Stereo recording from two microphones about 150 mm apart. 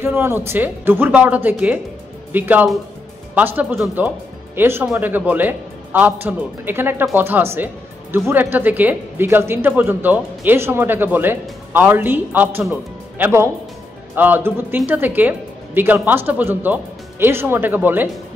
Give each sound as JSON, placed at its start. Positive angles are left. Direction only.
{"t": 0.0, "sound": "speech", "side_deg": -15}